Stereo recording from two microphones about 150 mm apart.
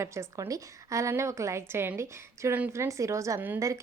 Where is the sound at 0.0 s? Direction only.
20° right (ahead or behind).